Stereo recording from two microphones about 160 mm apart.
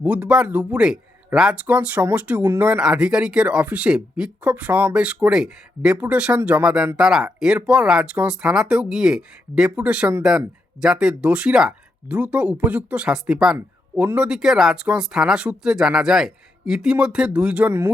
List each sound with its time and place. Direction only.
0.0 s speech: 10° right (ahead or behind)